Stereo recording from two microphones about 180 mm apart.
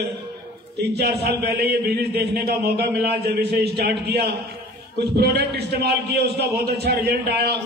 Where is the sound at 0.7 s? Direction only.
65° right (ahead or behind).